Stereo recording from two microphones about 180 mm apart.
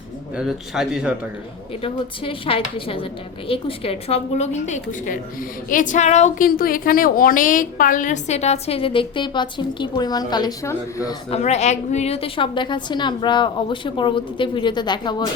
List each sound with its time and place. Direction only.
0.3 s a man's voice: centre (ahead or behind)
1.8 s a woman's voice: 30° left (ahead or behind); by 5.2 s 45° left (ahead or behind)
5.6 s a sound: 45° left (ahead or behind)
6.6 s a woman's voice: 50° left (ahead or behind); by 11.2 s 20° left (ahead or behind)
11.3 s a woman's voice: 35° left (ahead or behind)